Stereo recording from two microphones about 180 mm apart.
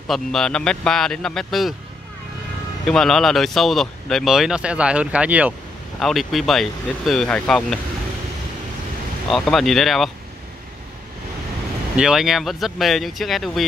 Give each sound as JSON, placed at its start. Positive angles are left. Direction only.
{"t": 0.1, "sound": "speech", "side_deg": 5}
{"t": 2.9, "sound": "speech", "side_deg": 0}
{"t": 9.3, "sound": "speech", "side_deg": 0}
{"t": 12.0, "sound": "speech", "side_deg": -5}